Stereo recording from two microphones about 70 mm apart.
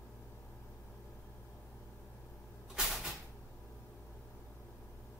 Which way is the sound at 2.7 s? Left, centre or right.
Centre.